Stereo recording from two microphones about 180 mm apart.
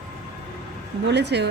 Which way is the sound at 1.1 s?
70° right (ahead or behind).